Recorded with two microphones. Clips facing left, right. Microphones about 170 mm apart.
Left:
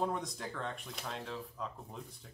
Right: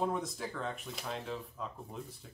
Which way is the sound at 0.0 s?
5° right (ahead or behind).